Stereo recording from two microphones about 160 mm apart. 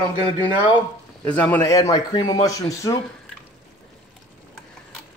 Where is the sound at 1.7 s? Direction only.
25° left (ahead or behind).